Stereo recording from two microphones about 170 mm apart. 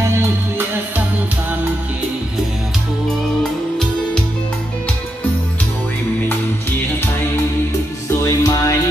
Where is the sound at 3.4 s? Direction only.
5° left (ahead or behind).